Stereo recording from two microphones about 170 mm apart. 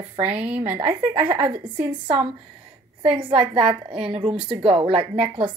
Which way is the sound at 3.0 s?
30° right (ahead or behind).